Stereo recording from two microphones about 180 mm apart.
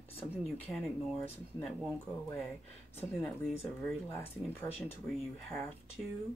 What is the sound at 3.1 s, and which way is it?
Speech, 5° left (ahead or behind).